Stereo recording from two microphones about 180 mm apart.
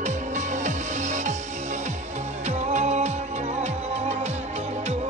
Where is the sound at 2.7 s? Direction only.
40° right (ahead or behind).